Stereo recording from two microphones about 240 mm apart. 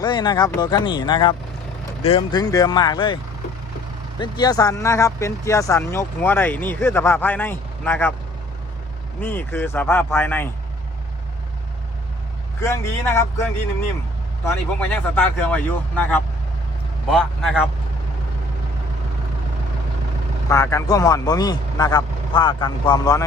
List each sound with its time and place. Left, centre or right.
0.0 s speech: centre
4.2 s speech: centre
9.2 s speech: centre
12.5 s speech: centre
14.4 s a man's voice: centre
20.5 s speech: centre